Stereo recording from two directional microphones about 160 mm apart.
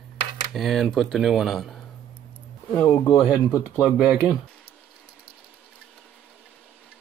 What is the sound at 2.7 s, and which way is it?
Speech, 15° left (ahead or behind).